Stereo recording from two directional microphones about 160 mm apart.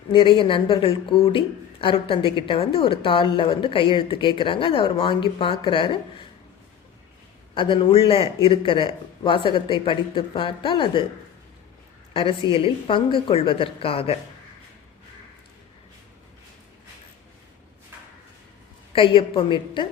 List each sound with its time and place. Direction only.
0.1 s speech: 30° left (ahead or behind)
7.5 s speech: 30° left (ahead or behind)
12.1 s speech: 35° left (ahead or behind)
18.9 s speech: 30° left (ahead or behind)